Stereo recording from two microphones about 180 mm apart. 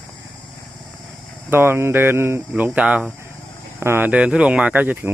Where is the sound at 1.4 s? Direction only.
15° right (ahead or behind).